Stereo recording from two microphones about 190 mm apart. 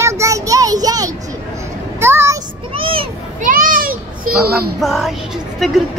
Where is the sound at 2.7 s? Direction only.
30° right (ahead or behind).